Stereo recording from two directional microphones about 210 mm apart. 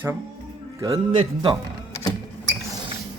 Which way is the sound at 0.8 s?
20° right (ahead or behind).